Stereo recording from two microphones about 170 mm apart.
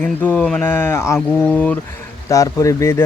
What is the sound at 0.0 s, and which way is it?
Speech, 10° left (ahead or behind).